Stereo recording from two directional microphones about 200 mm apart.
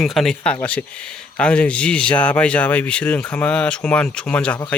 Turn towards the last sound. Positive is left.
turn(degrees=5)  # may be behind; listen again after turning